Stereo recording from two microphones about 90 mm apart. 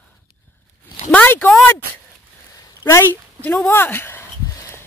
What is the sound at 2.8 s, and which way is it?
Speech, 30° left (ahead or behind).